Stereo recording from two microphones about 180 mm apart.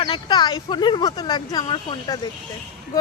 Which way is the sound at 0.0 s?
25° left (ahead or behind).